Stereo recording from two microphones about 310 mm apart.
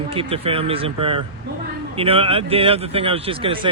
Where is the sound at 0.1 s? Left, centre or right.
Centre.